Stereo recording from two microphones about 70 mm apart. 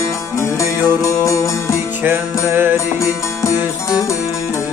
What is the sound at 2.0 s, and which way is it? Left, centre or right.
Music, right.